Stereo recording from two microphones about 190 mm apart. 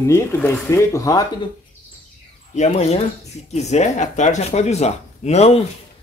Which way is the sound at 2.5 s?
35° left (ahead or behind).